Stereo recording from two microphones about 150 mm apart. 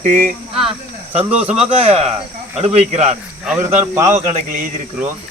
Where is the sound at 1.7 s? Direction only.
45° right (ahead or behind).